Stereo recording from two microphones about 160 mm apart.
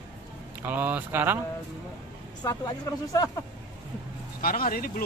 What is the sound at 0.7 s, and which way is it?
Speech, 10° right (ahead or behind).